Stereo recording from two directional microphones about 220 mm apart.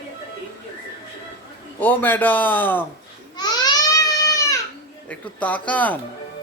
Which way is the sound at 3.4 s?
20° left (ahead or behind).